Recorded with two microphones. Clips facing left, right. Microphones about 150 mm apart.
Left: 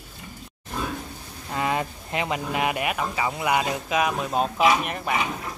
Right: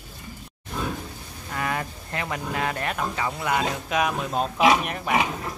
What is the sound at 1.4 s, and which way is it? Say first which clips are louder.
Speech: left 3 dB; 20° left (ahead or behind).